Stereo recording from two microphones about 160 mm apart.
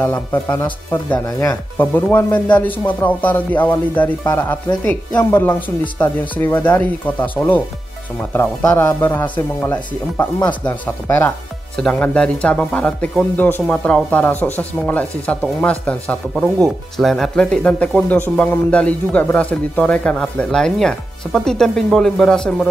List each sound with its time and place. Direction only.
1.2 s speech: 20° left (ahead or behind)
1.8 s speech: 10° left (ahead or behind)